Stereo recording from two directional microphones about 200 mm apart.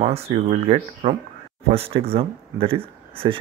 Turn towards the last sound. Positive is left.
turn(degrees=-25)  # may be behind; listen again after turning